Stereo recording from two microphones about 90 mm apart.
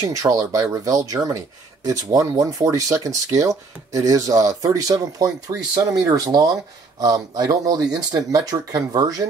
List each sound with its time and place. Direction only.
0.0 s speech: 35° right (ahead or behind)